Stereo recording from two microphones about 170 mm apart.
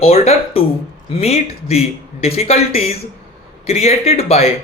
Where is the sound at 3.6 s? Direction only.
35° left (ahead or behind).